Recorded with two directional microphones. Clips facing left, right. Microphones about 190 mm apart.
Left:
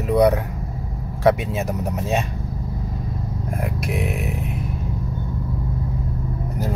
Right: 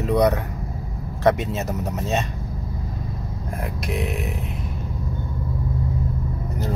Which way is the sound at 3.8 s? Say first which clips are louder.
Right 2 dB; 5° left (ahead or behind).